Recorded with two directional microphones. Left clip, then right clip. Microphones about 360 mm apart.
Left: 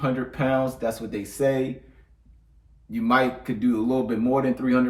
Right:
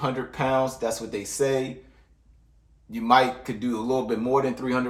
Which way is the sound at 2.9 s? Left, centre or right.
Centre.